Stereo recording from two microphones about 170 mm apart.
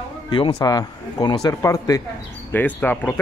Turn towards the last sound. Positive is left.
turn(degrees=10)  # may be behind; listen again after turning